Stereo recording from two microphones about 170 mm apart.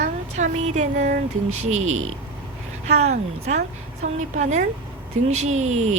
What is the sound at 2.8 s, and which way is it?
A woman's voice, 45° right (ahead or behind).